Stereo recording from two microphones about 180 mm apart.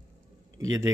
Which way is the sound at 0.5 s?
20° right (ahead or behind).